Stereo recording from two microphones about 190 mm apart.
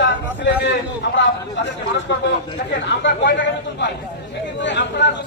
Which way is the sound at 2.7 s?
70° left (ahead or behind).